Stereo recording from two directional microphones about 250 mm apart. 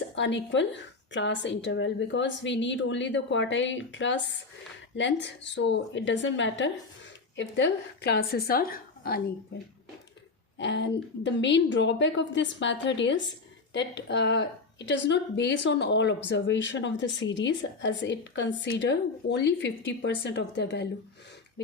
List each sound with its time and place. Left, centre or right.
0.2 s a woman's voice: left
10.6 s speech: left